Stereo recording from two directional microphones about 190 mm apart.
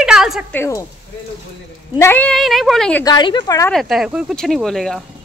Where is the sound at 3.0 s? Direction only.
20° left (ahead or behind).